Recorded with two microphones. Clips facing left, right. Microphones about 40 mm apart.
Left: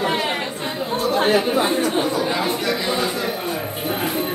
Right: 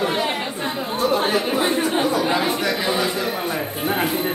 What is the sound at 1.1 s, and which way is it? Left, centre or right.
Speech, left.